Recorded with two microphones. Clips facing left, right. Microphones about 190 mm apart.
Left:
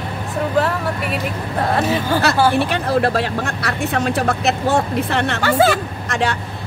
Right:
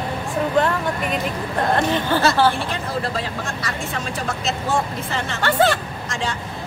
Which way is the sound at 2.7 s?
70° left (ahead or behind).